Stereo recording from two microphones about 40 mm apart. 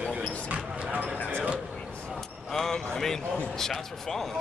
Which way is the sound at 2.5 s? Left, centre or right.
Centre.